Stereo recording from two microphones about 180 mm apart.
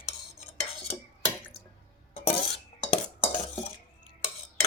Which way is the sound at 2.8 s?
30° left (ahead or behind).